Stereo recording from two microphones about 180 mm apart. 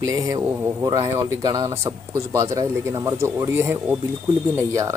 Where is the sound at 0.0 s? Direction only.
20° right (ahead or behind).